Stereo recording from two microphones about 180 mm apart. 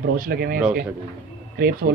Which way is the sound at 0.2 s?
55° right (ahead or behind).